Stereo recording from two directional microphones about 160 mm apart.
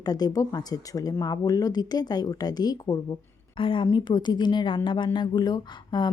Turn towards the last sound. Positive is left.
turn(degrees=25)  # may be behind; listen again after turning